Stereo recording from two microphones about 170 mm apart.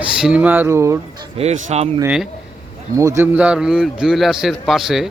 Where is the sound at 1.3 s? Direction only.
40° right (ahead or behind).